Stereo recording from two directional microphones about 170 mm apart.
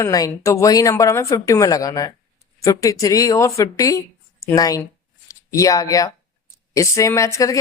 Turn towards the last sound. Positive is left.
turn(degrees=20)  # may be behind; listen again after turning